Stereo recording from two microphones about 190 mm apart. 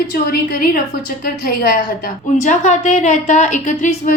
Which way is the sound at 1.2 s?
50° left (ahead or behind).